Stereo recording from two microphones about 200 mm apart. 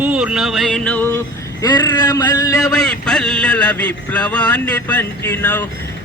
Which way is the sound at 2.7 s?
5° left (ahead or behind).